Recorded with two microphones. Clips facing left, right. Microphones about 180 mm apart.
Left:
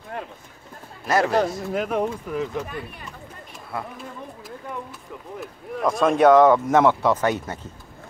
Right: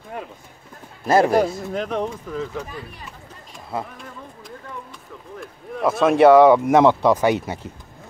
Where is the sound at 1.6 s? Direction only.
5° left (ahead or behind).